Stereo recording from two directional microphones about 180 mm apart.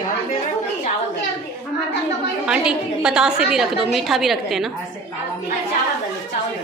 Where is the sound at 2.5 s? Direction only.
5° right (ahead or behind).